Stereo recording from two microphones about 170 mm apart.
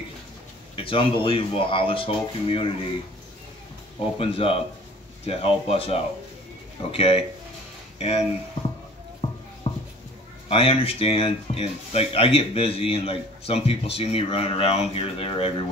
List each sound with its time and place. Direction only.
0.7 s speech: 30° left (ahead or behind)
4.2 s speech: 35° left (ahead or behind)
9.6 s a sound: 35° left (ahead or behind)
10.5 s speech: 35° left (ahead or behind)